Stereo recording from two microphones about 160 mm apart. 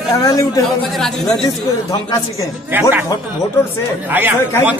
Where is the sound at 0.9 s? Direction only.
Centre (ahead or behind).